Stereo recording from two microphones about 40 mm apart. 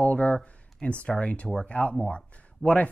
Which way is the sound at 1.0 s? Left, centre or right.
Left.